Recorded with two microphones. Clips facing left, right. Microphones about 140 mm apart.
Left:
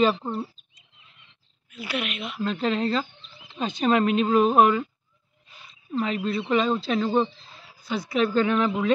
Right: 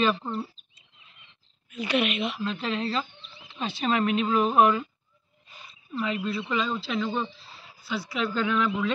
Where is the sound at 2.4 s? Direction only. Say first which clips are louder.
Left 4 dB; 45° left (ahead or behind).